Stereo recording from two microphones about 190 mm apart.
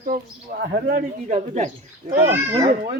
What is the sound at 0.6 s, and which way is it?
Speech, 55° right (ahead or behind).